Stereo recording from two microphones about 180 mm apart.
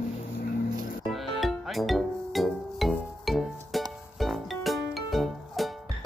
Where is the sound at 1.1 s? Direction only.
Centre (ahead or behind).